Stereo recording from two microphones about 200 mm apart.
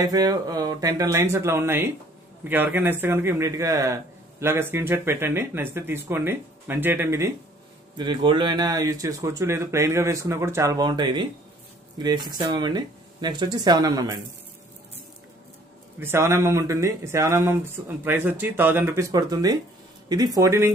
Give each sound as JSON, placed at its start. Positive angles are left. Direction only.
{"t": 0.0, "sound": "a man's voice", "side_deg": -20}
{"t": 16.0, "sound": "a man's voice", "side_deg": -15}